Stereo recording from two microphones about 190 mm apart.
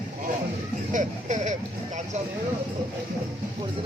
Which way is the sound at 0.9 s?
40° right (ahead or behind).